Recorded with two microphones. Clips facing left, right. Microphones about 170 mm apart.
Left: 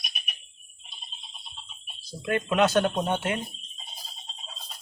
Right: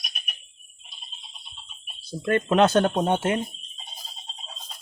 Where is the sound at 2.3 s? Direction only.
45° right (ahead or behind).